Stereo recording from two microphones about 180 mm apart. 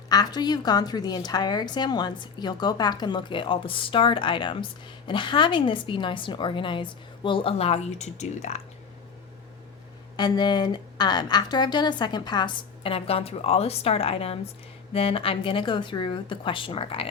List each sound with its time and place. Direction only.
0.1 s a woman's voice: 20° left (ahead or behind); by 8.6 s 40° left (ahead or behind)
10.2 s a woman's voice: 25° left (ahead or behind)